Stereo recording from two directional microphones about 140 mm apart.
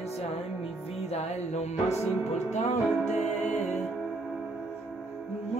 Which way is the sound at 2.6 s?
55° left (ahead or behind).